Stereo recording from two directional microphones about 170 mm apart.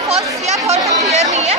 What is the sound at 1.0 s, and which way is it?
Speech, 45° right (ahead or behind).